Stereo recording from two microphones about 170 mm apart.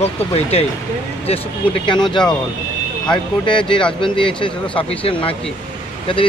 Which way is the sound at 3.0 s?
30° left (ahead or behind).